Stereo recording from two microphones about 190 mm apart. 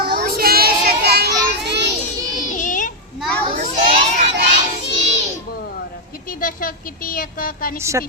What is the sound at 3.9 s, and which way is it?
Crowd, 35° right (ahead or behind).